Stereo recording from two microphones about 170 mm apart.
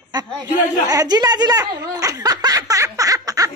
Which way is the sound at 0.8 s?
25° right (ahead or behind).